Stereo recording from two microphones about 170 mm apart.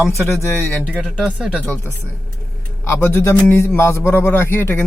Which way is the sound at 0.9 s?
Centre (ahead or behind).